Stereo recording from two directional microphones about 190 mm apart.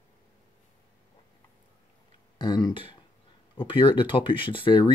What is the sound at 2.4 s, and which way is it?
Speech, 25° left (ahead or behind).